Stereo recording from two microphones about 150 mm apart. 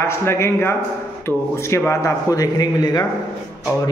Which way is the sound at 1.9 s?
20° left (ahead or behind).